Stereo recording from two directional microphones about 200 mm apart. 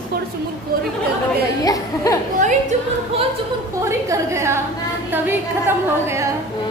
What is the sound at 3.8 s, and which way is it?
A woman's voice, 15° right (ahead or behind).